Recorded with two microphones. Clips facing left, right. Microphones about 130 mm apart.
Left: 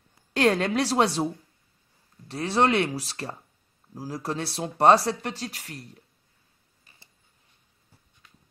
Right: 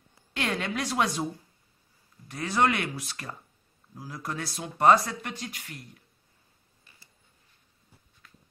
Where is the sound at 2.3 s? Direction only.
30° left (ahead or behind).